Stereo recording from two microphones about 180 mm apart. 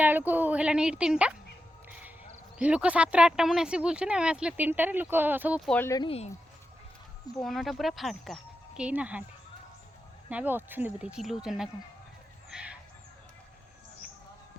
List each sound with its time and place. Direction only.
0.0 s speech: 10° right (ahead or behind)
2.6 s speech: 5° right (ahead or behind)
5.8 s speech: 20° left (ahead or behind)
6.1 s speech: 35° left (ahead or behind)
7.3 s speech: centre (ahead or behind)
10.2 s speech: 10° right (ahead or behind)
12.5 s a sound: 5° right (ahead or behind)